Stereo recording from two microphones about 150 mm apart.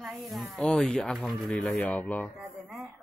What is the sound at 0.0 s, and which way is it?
Speech, centre (ahead or behind).